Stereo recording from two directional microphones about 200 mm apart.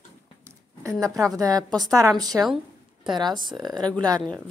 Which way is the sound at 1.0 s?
15° right (ahead or behind).